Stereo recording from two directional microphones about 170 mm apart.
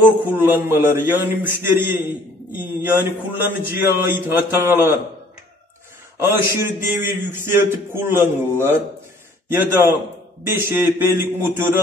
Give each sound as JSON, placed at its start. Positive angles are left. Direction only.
{"t": 0.0, "sound": "a man's voice", "side_deg": -10}
{"t": 6.1, "sound": "a man's voice", "side_deg": -15}